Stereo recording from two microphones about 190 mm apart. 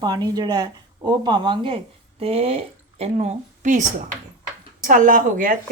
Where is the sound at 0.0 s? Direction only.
20° right (ahead or behind).